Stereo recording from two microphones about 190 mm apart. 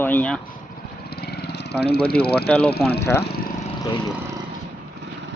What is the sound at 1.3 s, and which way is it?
Speech, 60° left (ahead or behind).